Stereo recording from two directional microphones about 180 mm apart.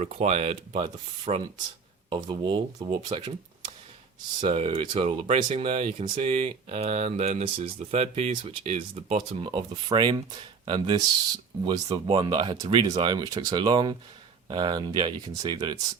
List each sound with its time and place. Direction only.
0.0 s speech: 40° right (ahead or behind); by 3.3 s 25° right (ahead or behind)
4.4 s speech: 30° right (ahead or behind)